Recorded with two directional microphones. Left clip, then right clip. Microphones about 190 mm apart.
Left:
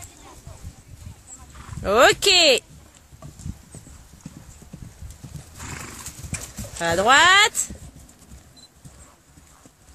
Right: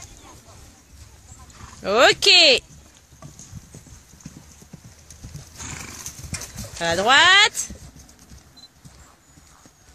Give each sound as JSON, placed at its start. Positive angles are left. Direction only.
{"t": 1.8, "sound": "speech", "side_deg": 0}
{"t": 5.6, "sound": "horse", "side_deg": -40}
{"t": 6.0, "sound": "clip-clop", "side_deg": 0}